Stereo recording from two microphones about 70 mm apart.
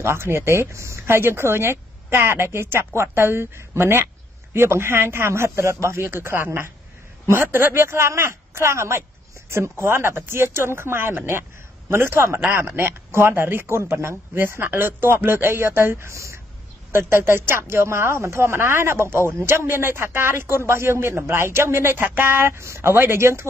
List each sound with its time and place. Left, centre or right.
0.0 s speech: right